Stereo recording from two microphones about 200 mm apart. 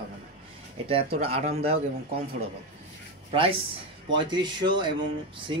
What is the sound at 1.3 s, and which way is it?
Speech, 30° right (ahead or behind).